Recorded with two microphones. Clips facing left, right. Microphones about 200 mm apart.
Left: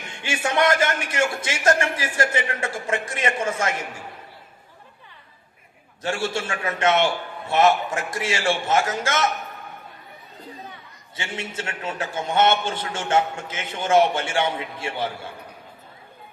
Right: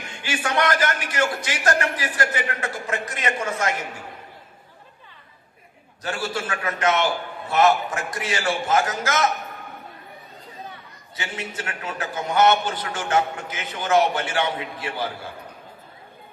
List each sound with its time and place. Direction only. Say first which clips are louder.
0.1 s a man's voice: left 1 dB; 25° left (ahead or behind)
6.0 s a man's voice: left 2 dB; 25° left (ahead or behind)
11.2 s a man's voice: left 1 dB; 25° left (ahead or behind)